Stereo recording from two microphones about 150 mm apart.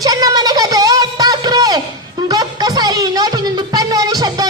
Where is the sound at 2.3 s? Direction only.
25° right (ahead or behind).